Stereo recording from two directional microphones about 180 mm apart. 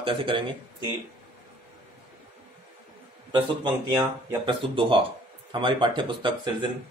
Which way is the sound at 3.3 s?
25° right (ahead or behind).